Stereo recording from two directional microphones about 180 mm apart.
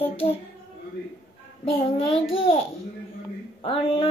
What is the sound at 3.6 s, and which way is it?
Speech, 30° left (ahead or behind).